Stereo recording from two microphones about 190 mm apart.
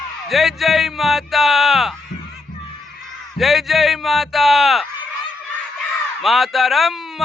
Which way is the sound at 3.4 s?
Centre (ahead or behind).